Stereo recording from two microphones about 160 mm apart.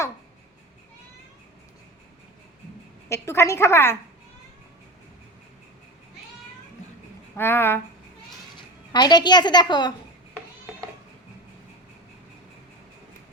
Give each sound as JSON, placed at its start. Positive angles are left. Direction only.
{"t": 3.1, "sound": "a woman's voice", "side_deg": 15}
{"t": 7.3, "sound": "a woman's voice", "side_deg": 15}
{"t": 8.9, "sound": "a woman's voice", "side_deg": 25}